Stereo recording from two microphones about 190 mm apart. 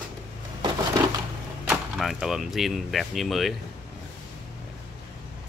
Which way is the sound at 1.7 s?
Centre (ahead or behind).